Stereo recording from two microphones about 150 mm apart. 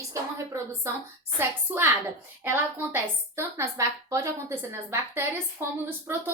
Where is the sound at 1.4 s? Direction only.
15° right (ahead or behind).